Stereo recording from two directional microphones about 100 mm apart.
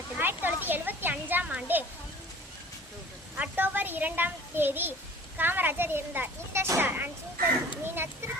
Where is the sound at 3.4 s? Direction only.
20° right (ahead or behind).